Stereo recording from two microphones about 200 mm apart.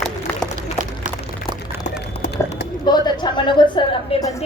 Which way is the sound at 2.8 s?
20° left (ahead or behind).